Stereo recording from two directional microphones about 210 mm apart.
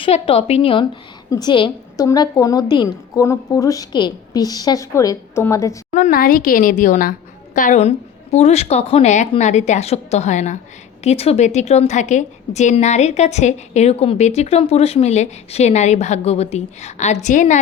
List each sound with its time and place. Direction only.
0.0 s a woman's voice: 25° left (ahead or behind)
5.9 s a woman's voice: 35° left (ahead or behind)